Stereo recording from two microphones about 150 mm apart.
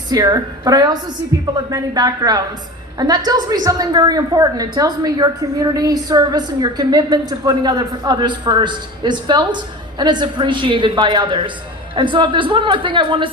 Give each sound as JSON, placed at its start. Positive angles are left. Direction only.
{"t": 0.1, "sound": "a woman's voice", "side_deg": -25}